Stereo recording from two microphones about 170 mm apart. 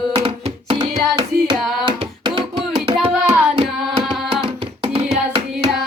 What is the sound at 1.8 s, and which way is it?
Hands, 30° right (ahead or behind).